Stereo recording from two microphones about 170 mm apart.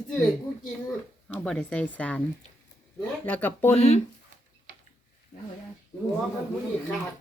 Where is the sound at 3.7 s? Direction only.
40° left (ahead or behind).